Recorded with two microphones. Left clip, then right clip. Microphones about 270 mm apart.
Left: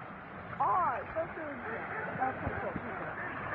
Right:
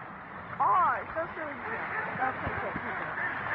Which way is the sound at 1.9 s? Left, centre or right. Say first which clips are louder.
Right 3 dB; right.